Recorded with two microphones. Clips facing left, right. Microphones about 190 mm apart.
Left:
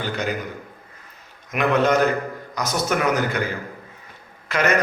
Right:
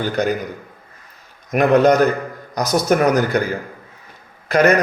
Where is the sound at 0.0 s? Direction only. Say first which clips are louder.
Right 6 dB; 45° right (ahead or behind).